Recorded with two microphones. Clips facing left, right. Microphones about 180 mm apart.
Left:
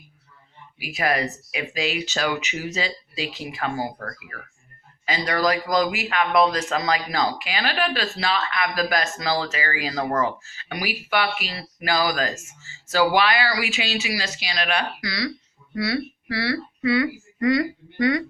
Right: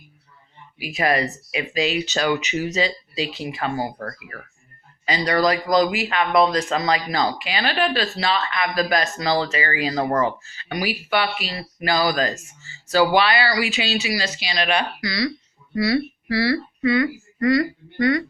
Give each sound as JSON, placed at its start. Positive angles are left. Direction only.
{"t": 0.8, "sound": "speech", "side_deg": 10}
{"t": 5.0, "sound": "speech", "side_deg": 5}
{"t": 10.0, "sound": "speech", "side_deg": -15}
{"t": 10.7, "sound": "speech", "side_deg": 10}
{"t": 14.8, "sound": "speech", "side_deg": -10}
{"t": 15.7, "sound": "speech", "side_deg": 0}
{"t": 16.8, "sound": "speech", "side_deg": 10}